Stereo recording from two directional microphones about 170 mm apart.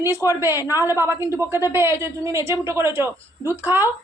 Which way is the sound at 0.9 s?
15° right (ahead or behind).